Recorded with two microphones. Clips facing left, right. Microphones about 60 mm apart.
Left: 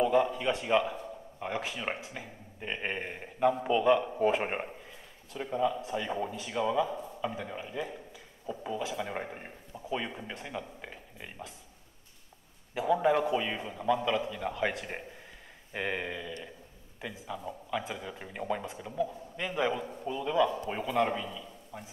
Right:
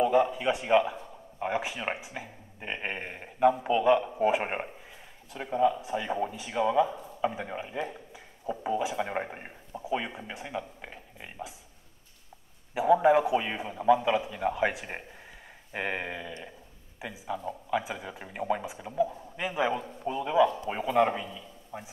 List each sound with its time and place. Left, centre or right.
0.0 s a man's voice: centre
12.7 s a man's voice: centre